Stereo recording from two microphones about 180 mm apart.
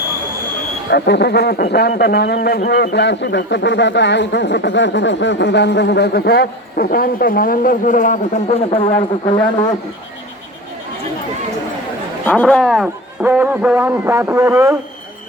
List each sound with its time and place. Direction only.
0.9 s a man's voice: 65° left (ahead or behind); by 9.7 s 25° left (ahead or behind)
12.2 s speech: 10° left (ahead or behind); by 14.8 s 15° right (ahead or behind)